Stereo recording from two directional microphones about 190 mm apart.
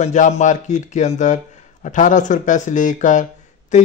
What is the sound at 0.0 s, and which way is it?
Speech, 40° left (ahead or behind).